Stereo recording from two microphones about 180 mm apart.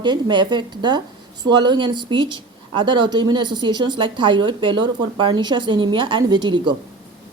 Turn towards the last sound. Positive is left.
turn(degrees=-25)  # may be behind; listen again after turning